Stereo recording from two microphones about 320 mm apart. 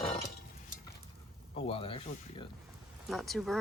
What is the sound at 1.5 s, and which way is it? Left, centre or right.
Speech, centre.